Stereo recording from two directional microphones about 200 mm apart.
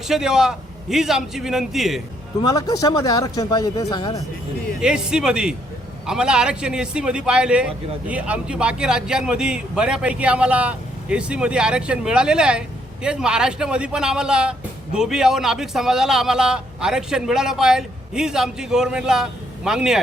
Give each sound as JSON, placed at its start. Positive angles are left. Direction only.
{"t": 0.1, "sound": "a man's voice", "side_deg": -5}
{"t": 2.4, "sound": "speech", "side_deg": 20}
{"t": 4.8, "sound": "a man's voice", "side_deg": -5}